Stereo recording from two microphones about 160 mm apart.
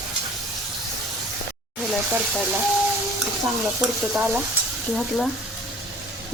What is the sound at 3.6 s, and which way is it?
Speech, 5° right (ahead or behind).